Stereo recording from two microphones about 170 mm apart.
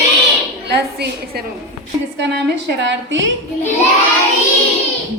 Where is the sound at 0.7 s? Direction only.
75° right (ahead or behind).